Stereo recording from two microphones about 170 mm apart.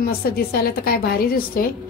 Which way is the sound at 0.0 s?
65° left (ahead or behind).